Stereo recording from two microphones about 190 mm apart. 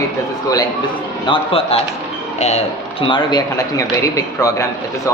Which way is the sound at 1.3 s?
30° left (ahead or behind).